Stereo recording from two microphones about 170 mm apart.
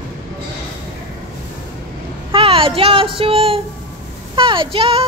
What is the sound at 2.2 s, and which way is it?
Speech, 30° right (ahead or behind).